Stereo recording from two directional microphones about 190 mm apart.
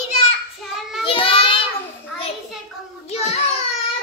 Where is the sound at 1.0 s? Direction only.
30° left (ahead or behind).